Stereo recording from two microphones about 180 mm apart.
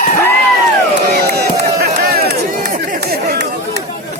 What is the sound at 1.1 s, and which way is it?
Music, 65° right (ahead or behind).